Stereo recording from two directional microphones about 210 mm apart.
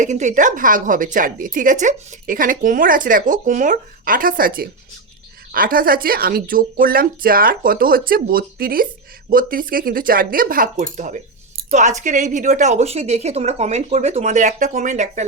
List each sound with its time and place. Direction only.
0.0 s a woman's voice: 35° right (ahead or behind)